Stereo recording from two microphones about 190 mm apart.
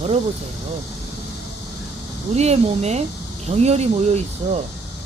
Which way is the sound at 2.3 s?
35° right (ahead or behind).